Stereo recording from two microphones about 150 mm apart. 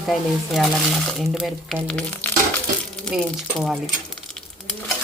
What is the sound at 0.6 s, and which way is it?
Speech, centre (ahead or behind).